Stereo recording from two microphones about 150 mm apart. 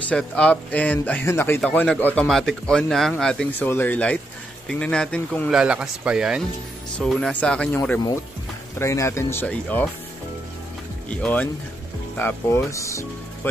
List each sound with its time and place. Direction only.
0.1 s speech: 10° left (ahead or behind)
5.5 s speech: 5° right (ahead or behind)
8.7 s speech: 20° left (ahead or behind)
11.1 s speech: 10° left (ahead or behind)